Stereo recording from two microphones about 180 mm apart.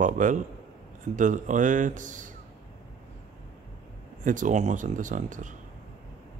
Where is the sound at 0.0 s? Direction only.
45° right (ahead or behind).